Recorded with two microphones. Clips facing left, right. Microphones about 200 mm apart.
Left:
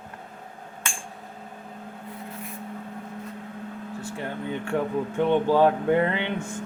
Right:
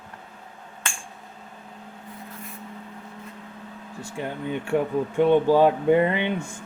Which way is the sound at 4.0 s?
10° right (ahead or behind).